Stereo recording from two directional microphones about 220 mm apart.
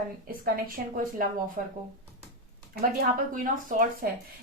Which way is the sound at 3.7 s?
40° right (ahead or behind).